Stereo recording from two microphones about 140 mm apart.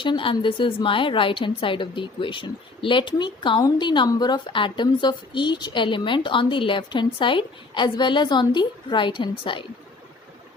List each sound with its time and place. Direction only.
0.0 s a woman's voice: 35° left (ahead or behind)